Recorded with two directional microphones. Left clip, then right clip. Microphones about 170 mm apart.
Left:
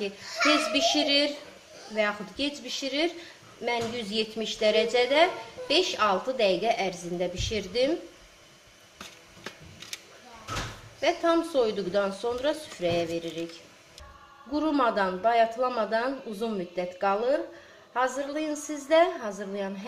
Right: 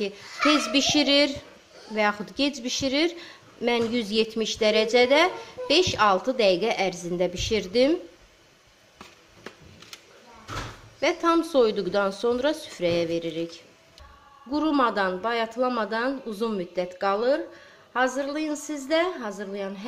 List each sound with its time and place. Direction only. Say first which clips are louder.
0.0 s a woman's voice: right 2 dB; 45° right (ahead or behind)
11.0 s speech: right 2 dB; 40° right (ahead or behind)
14.5 s speech: right 2 dB; 25° right (ahead or behind)